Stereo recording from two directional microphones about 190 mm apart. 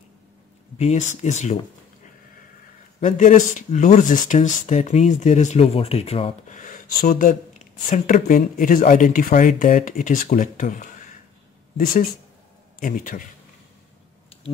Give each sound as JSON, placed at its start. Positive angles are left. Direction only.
{"t": 0.7, "sound": "speech", "side_deg": 35}
{"t": 3.0, "sound": "a man's voice", "side_deg": 40}